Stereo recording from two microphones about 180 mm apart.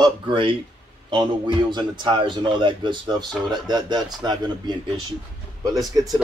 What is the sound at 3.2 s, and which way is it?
Speech, centre (ahead or behind).